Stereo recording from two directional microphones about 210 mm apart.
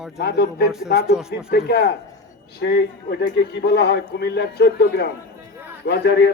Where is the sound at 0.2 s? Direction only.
50° left (ahead or behind).